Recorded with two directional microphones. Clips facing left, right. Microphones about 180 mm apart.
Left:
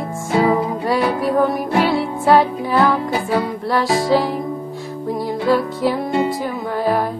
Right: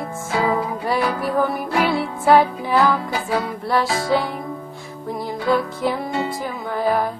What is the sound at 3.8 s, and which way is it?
Music, 20° left (ahead or behind).